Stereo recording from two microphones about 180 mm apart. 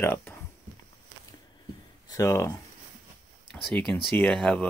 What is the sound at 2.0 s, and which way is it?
Speech, 20° left (ahead or behind).